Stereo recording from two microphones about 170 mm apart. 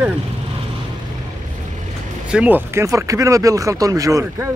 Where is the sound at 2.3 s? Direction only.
10° right (ahead or behind).